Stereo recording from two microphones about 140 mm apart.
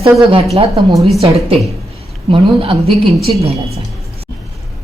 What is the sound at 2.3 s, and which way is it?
A woman's voice, 40° right (ahead or behind).